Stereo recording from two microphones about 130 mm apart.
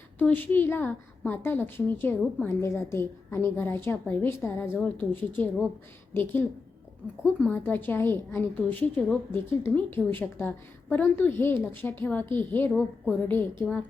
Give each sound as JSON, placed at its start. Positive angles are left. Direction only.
{"t": 0.2, "sound": "a woman's voice", "side_deg": 15}
{"t": 7.4, "sound": "a woman's voice", "side_deg": 15}